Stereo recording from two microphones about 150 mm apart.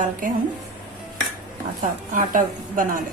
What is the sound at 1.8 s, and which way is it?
A woman's voice, 60° right (ahead or behind).